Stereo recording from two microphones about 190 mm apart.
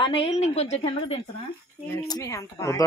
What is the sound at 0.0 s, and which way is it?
A woman's voice, 30° left (ahead or behind).